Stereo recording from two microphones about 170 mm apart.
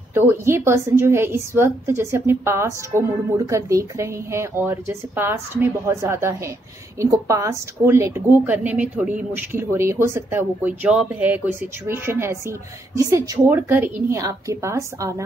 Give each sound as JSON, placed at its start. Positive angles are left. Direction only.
{"t": 0.5, "sound": "a woman's voice", "side_deg": -15}